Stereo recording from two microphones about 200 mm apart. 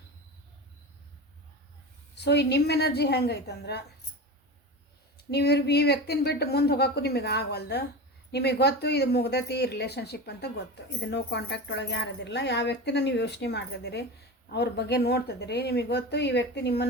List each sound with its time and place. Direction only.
2.1 s speech: 60° left (ahead or behind)
5.3 s speech: 55° left (ahead or behind)